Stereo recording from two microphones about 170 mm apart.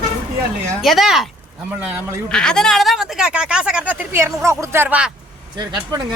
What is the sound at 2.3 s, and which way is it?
Speech, 5° left (ahead or behind).